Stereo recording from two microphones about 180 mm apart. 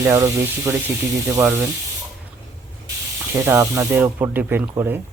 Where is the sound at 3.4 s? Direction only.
15° right (ahead or behind).